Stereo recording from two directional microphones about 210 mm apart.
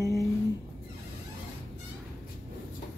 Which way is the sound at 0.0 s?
15° right (ahead or behind).